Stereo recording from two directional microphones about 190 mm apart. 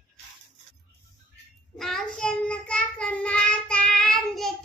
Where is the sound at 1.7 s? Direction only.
Centre (ahead or behind).